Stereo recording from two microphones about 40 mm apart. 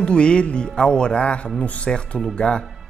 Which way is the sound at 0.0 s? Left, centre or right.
Left.